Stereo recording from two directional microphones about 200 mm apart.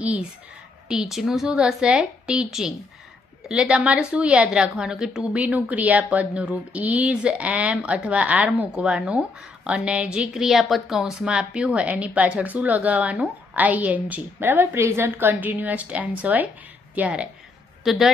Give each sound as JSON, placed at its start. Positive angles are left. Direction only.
{"t": 0.0, "sound": "a woman's voice", "side_deg": -5}